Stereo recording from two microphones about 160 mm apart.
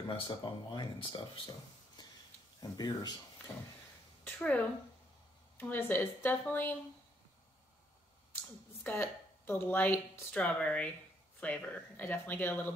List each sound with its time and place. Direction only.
0.1 s speech: 30° left (ahead or behind)
2.6 s speech: 25° left (ahead or behind)
4.4 s speech: 10° left (ahead or behind)
8.8 s speech: 10° left (ahead or behind)